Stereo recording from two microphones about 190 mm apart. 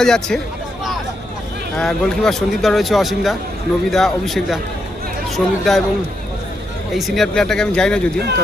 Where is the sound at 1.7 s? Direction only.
Centre (ahead or behind).